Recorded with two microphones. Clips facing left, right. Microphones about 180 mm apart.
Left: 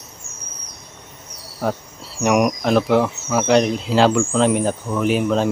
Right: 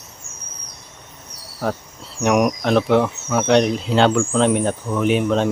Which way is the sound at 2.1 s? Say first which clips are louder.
Even; centre (ahead or behind).